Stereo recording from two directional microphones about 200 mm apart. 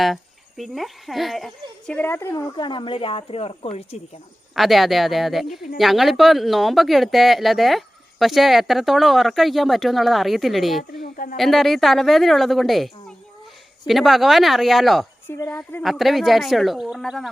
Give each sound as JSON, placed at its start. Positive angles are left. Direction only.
{"t": 0.0, "sound": "speech", "side_deg": 0}
{"t": 4.5, "sound": "speech", "side_deg": 0}
{"t": 11.0, "sound": "speech", "side_deg": 45}
{"t": 11.3, "sound": "speech", "side_deg": 0}